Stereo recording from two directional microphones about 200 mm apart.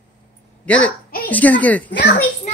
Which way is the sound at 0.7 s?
5° left (ahead or behind).